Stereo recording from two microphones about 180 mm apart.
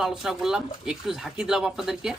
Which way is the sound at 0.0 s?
5° right (ahead or behind).